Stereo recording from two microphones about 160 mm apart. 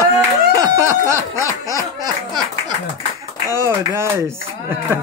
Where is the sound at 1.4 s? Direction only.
20° left (ahead or behind).